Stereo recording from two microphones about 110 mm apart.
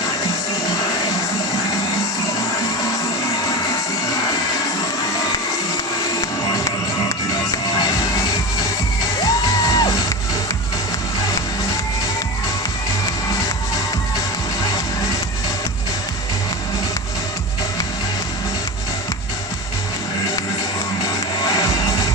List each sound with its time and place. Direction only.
9.2 s music: 30° left (ahead or behind)
21.5 s music: 30° left (ahead or behind)